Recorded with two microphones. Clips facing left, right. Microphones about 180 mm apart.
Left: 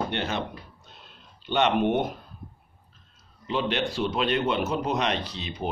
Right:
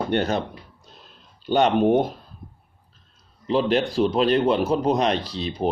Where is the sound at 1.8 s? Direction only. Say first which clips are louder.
Right 6 dB; 35° right (ahead or behind).